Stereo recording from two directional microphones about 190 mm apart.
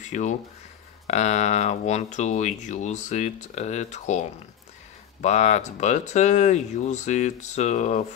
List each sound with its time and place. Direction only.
0.0 s speech: 40° left (ahead or behind)